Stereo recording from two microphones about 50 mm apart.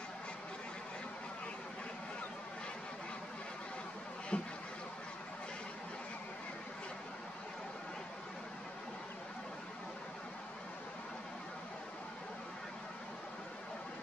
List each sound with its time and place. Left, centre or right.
4.3 s speech: left